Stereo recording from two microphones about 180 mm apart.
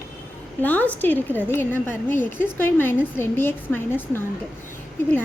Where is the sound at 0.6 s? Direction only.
10° left (ahead or behind).